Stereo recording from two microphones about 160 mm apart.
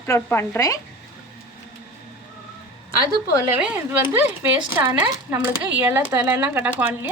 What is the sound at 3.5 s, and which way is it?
Speech, 10° right (ahead or behind).